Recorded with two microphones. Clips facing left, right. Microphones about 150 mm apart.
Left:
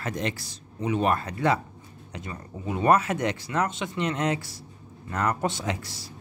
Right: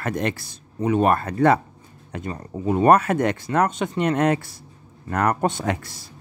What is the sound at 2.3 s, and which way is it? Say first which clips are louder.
Speech: right 9 dB; 45° right (ahead or behind).